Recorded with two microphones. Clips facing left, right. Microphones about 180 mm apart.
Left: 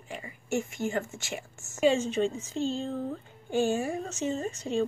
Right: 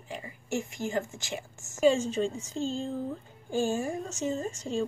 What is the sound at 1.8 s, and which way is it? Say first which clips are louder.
Speech: even; 40° right (ahead or behind).